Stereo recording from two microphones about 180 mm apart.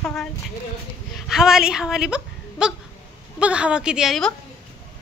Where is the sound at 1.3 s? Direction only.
5° right (ahead or behind).